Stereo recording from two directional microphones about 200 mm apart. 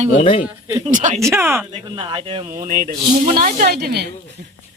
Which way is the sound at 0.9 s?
40° right (ahead or behind).